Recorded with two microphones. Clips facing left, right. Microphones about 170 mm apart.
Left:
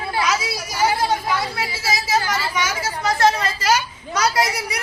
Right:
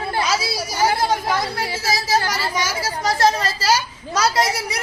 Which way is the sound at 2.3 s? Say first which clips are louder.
Even; 35° right (ahead or behind).